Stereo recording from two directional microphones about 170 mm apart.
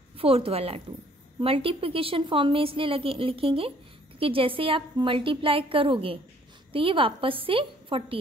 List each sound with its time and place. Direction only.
0.2 s a woman's voice: 35° right (ahead or behind)